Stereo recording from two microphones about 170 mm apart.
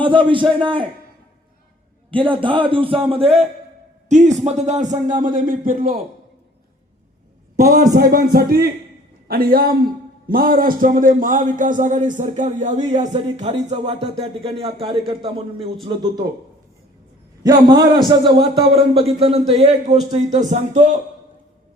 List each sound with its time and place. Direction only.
0.0 s a man's voice: 30° right (ahead or behind)
2.3 s a man's voice: 30° right (ahead or behind); by 6.0 s 55° right (ahead or behind)
7.9 s music: 60° right (ahead or behind)
10.2 s speech: 55° right (ahead or behind)
13.1 s a man's voice: 35° right (ahead or behind)
17.4 s a man's voice: 25° right (ahead or behind); by 20.6 s 40° right (ahead or behind)